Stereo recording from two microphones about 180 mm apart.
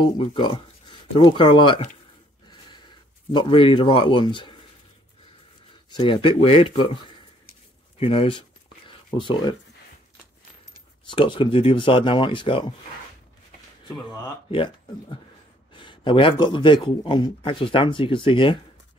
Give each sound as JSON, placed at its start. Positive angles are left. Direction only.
{"t": 0.0, "sound": "a man's voice", "side_deg": 30}
{"t": 2.5, "sound": "a sound", "side_deg": 25}
{"t": 5.9, "sound": "a man's voice", "side_deg": 25}
{"t": 8.0, "sound": "a sound", "side_deg": 30}
{"t": 11.1, "sound": "a man's voice", "side_deg": 25}
{"t": 14.5, "sound": "a man's voice", "side_deg": 30}